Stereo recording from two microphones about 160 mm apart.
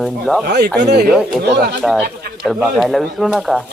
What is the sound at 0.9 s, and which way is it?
Speech, 85° right.